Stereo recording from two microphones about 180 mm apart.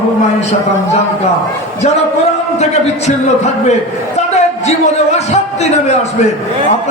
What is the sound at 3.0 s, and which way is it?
A man's voice, 40° left (ahead or behind).